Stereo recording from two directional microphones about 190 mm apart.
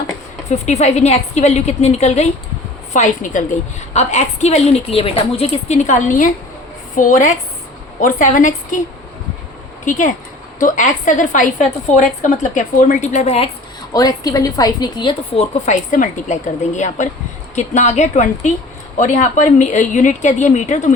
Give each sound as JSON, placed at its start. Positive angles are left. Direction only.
{"t": 0.5, "sound": "a woman's voice", "side_deg": 35}
{"t": 9.8, "sound": "a woman's voice", "side_deg": 40}
{"t": 13.9, "sound": "a woman's voice", "side_deg": 20}